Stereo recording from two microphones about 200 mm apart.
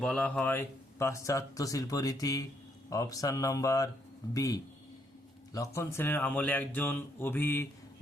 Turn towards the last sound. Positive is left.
turn(degrees=10)  # may be behind; listen again after turning